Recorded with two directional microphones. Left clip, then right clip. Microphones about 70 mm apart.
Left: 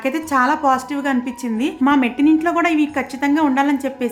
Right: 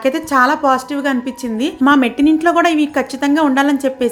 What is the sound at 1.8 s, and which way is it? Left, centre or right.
A woman's voice, right.